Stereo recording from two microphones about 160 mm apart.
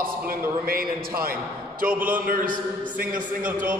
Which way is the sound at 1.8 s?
10° right (ahead or behind).